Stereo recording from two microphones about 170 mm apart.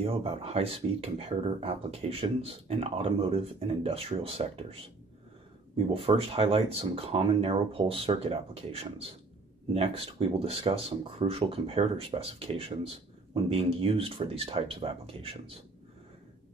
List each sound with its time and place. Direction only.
0.0 s speech: 35° right (ahead or behind)
5.9 s speech: 35° right (ahead or behind)